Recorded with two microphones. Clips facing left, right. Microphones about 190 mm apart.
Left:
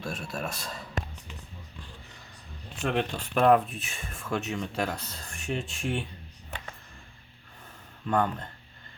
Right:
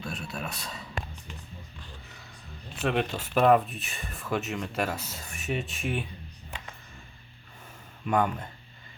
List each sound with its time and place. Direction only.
0.1 s a man's voice: 45° left (ahead or behind)
0.4 s speech: centre (ahead or behind)
2.8 s speech: 5° right (ahead or behind)
8.0 s speech: 10° right (ahead or behind)